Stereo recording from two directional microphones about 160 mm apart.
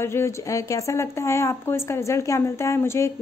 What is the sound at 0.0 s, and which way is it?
A woman's voice, 15° left (ahead or behind).